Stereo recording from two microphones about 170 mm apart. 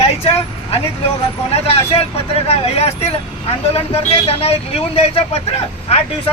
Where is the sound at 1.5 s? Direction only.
35° left (ahead or behind).